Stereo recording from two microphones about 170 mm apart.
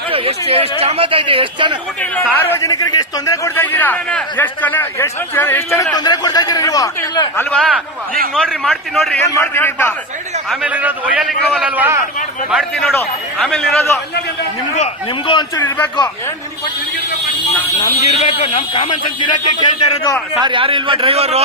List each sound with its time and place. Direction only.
0.1 s speech: 35° right (ahead or behind)
2.5 s a man's voice: 20° left (ahead or behind)
8.6 s a man's voice: centre (ahead or behind)
9.2 s a man's voice: 15° left (ahead or behind)
10.5 s a man's voice: 10° right (ahead or behind)
14.8 s a man's voice: 30° left (ahead or behind)
15.5 s a man's voice: 15° left (ahead or behind)
17.8 s a man's voice: 40° left (ahead or behind)
19.2 s speech: 45° left (ahead or behind)
20.3 s speech: 30° right (ahead or behind)